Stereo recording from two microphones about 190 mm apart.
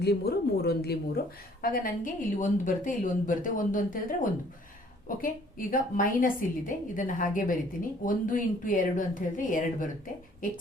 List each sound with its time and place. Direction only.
0.0 s speech: 60° left (ahead or behind)
1.7 s a woman's voice: 45° left (ahead or behind)